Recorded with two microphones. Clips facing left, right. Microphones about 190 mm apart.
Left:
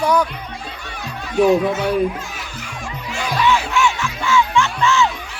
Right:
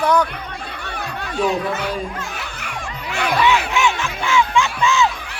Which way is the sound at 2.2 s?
60° right (ahead or behind).